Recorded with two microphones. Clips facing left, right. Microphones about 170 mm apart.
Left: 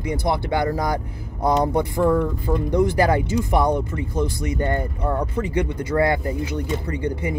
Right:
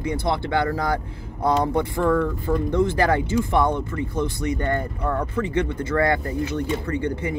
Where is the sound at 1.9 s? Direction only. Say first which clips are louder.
Left 2 dB; 20° left (ahead or behind).